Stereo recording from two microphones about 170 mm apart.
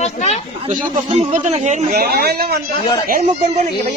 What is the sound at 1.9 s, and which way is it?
Speech, 65° right (ahead or behind).